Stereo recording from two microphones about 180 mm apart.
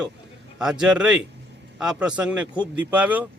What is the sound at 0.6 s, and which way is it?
Speech, 5° right (ahead or behind).